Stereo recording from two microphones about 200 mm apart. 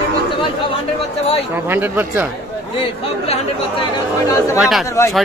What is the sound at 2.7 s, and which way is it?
Speech, 25° left (ahead or behind).